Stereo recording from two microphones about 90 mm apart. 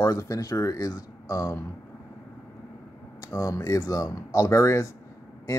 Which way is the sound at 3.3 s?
35° left (ahead or behind).